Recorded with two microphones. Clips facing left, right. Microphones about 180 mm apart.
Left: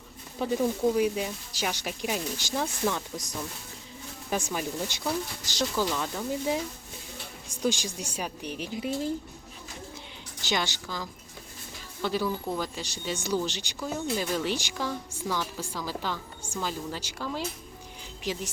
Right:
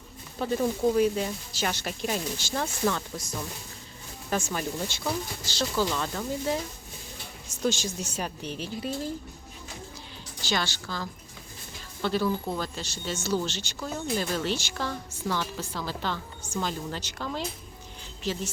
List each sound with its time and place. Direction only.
0.3 s a woman's voice: 15° left (ahead or behind)
10.4 s a woman's voice: 20° left (ahead or behind)